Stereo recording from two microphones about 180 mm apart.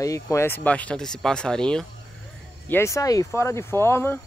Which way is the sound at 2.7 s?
15° left (ahead or behind).